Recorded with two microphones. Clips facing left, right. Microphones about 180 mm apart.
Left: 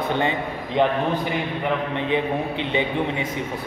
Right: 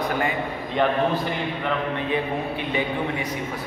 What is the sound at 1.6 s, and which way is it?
A man's voice, 20° left (ahead or behind).